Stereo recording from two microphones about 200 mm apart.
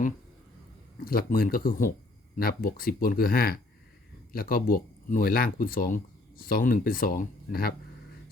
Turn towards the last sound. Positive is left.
turn(degrees=45)  # may be behind; listen again after turning